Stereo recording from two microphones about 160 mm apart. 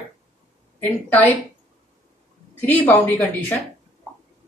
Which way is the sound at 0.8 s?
10° left (ahead or behind).